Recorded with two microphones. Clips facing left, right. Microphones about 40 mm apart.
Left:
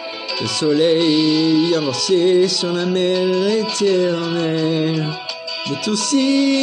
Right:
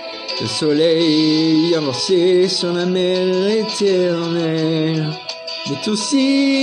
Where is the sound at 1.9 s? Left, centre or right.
Centre.